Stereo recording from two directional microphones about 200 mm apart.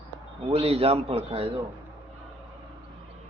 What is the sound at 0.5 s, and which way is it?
Speech, 30° right (ahead or behind).